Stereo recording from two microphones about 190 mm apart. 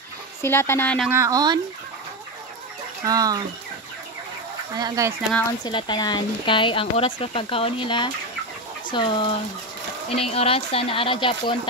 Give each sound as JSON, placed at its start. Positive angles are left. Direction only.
{"t": 0.4, "sound": "speech", "side_deg": 15}
{"t": 1.0, "sound": "speech", "side_deg": -15}
{"t": 3.1, "sound": "speech", "side_deg": -20}
{"t": 4.7, "sound": "speech", "side_deg": -20}
{"t": 5.6, "sound": "speech", "side_deg": 25}